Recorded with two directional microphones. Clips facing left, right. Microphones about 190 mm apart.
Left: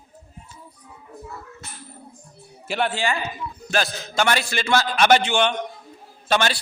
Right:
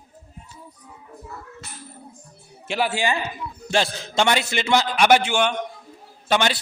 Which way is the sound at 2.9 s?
15° right (ahead or behind).